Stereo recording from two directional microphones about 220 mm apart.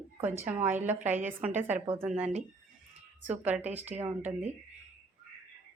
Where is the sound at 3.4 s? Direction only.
5° right (ahead or behind).